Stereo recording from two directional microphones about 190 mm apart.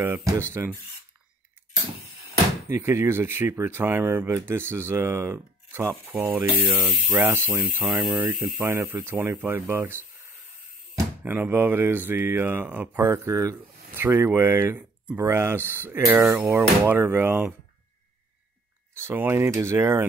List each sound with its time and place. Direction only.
0.0 s speech: 15° right (ahead or behind)
2.7 s speech: 15° right (ahead or behind)
11.2 s speech: 10° right (ahead or behind)
19.0 s speech: 10° right (ahead or behind)